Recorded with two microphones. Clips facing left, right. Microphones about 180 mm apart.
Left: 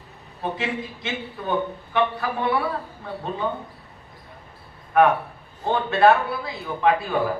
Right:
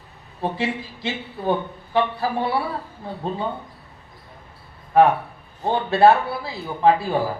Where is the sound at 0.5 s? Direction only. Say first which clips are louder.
Right 2 dB; 30° right (ahead or behind).